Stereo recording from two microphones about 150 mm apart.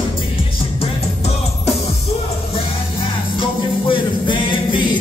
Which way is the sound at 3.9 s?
35° left (ahead or behind).